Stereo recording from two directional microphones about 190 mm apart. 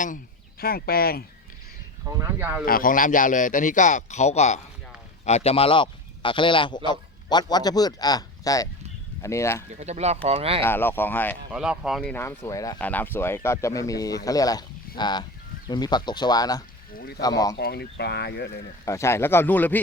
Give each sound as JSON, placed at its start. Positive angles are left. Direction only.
{"t": 0.6, "sound": "speech", "side_deg": 50}
{"t": 2.0, "sound": "speech", "side_deg": -15}
{"t": 2.6, "sound": "a man's voice", "side_deg": 50}
{"t": 9.8, "sound": "speech", "side_deg": -35}
{"t": 10.6, "sound": "speech", "side_deg": 10}
{"t": 11.5, "sound": "speech", "side_deg": -5}
{"t": 12.1, "sound": "speech", "side_deg": 10}
{"t": 16.9, "sound": "speech", "side_deg": 55}
{"t": 17.2, "sound": "speech", "side_deg": 20}
{"t": 17.6, "sound": "speech", "side_deg": 60}
{"t": 18.9, "sound": "speech", "side_deg": 15}